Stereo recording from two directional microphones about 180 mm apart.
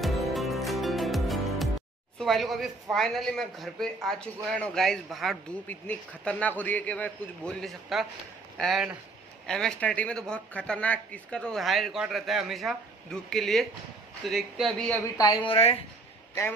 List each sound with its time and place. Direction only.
0.0 s music: centre (ahead or behind)
2.1 s a man's voice: centre (ahead or behind)
15.1 s a woman's voice: 20° left (ahead or behind)